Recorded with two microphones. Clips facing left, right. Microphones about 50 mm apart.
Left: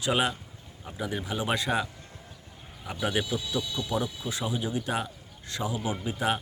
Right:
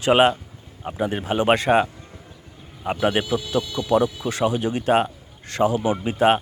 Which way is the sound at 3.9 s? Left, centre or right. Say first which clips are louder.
Right 12 dB; right.